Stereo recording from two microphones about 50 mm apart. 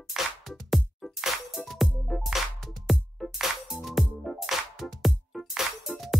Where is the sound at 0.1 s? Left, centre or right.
Centre.